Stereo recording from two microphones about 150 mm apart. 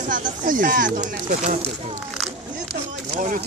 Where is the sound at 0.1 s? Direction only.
65° right (ahead or behind).